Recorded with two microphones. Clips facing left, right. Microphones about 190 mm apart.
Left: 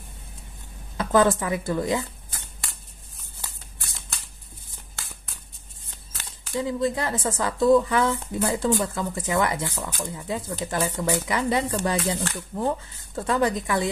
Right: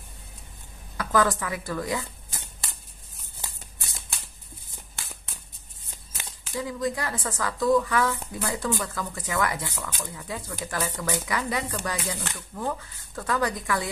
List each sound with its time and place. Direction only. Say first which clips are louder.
0.9 s speech: left 4 dB; 25° left (ahead or behind)
2.3 s shuffling cards: even; 15° right (ahead or behind)
6.5 s speech: left 4 dB; 25° left (ahead or behind)